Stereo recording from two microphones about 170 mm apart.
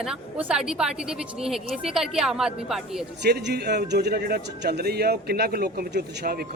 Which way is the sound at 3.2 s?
80° right.